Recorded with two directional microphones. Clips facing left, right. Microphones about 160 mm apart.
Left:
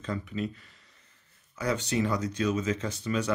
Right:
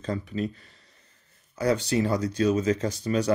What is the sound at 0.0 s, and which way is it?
Speech, 35° right (ahead or behind).